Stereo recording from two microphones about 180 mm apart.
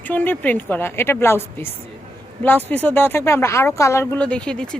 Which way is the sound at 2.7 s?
10° left (ahead or behind).